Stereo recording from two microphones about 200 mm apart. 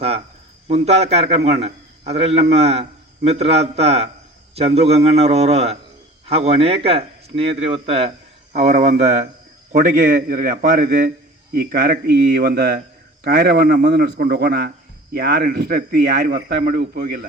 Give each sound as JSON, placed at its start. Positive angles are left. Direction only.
{"t": 0.7, "sound": "a man's voice", "side_deg": -30}